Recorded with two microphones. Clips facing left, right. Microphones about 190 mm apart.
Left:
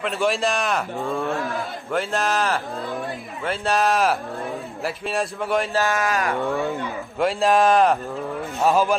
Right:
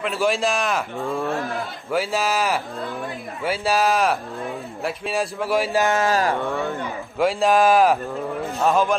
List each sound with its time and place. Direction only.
0.0 s speech: centre (ahead or behind)
5.7 s speech: 15° right (ahead or behind)
5.9 s mantra: 30° right (ahead or behind)
6.6 s speech: centre (ahead or behind)